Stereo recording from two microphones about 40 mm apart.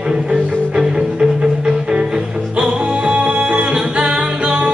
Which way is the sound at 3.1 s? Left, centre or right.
Right.